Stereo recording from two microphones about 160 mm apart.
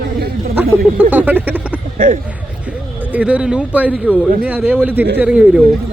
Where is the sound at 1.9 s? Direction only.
60° right (ahead or behind).